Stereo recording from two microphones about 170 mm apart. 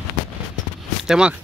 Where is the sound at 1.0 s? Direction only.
5° right (ahead or behind).